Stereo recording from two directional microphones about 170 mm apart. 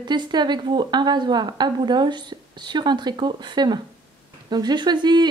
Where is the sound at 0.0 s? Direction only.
25° right (ahead or behind).